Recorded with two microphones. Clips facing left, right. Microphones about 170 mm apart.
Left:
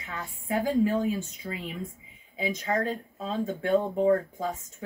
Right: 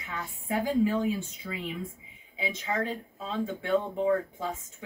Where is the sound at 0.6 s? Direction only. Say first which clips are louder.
Left 1 dB; 45° left (ahead or behind).